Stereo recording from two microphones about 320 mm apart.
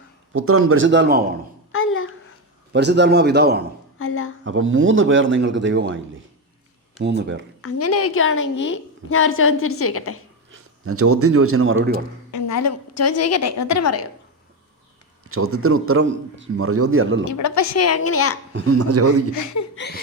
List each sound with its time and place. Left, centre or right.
0.3 s a man's voice: right
1.7 s a child's voice: left
2.7 s a man's voice: right
3.9 s a woman's voice: left
4.4 s a man's voice: right
7.0 s a man's voice: right
7.6 s a woman's voice: left
10.5 s speech: right
12.3 s a woman's voice: left
15.3 s a man's voice: right
17.2 s a woman's voice: left
18.5 s a man's voice: right
19.3 s speech: left
19.7 s a woman's voice: left